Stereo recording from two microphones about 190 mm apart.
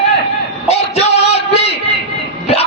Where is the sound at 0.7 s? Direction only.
35° left (ahead or behind).